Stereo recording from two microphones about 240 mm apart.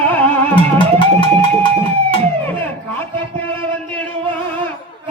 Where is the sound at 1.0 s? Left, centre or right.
Left.